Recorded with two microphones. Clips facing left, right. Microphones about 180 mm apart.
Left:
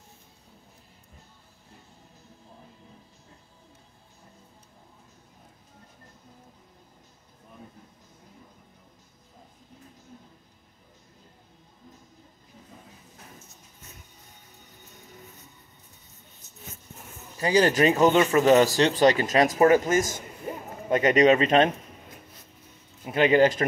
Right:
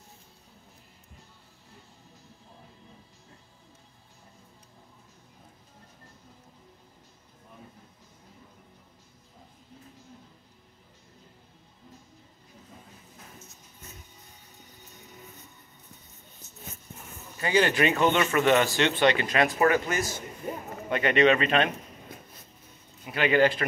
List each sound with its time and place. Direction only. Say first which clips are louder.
17.4 s speech: left 3 dB; 35° left (ahead or behind)
20.9 s speech: left 3 dB; 20° left (ahead or behind)
23.1 s speech: left 3 dB; 20° left (ahead or behind)